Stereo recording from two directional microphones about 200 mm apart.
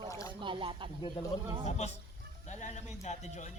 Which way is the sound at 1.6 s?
35° left (ahead or behind).